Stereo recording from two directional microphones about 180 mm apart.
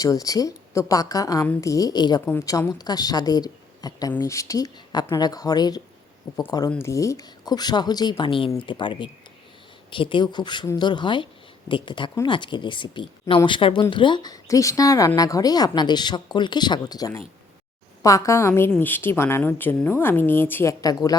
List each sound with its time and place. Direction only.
0.0 s speech: 20° left (ahead or behind)